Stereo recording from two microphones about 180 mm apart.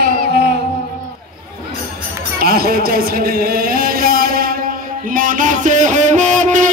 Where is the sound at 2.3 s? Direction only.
55° right (ahead or behind).